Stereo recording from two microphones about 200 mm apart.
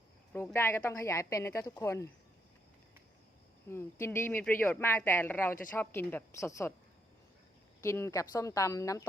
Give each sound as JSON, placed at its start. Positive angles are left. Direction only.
{"t": 0.3, "sound": "speech", "side_deg": 10}
{"t": 3.7, "sound": "speech", "side_deg": 10}
{"t": 7.8, "sound": "speech", "side_deg": 15}